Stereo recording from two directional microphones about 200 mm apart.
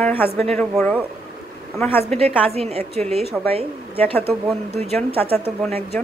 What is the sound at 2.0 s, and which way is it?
A woman's voice, 30° right (ahead or behind).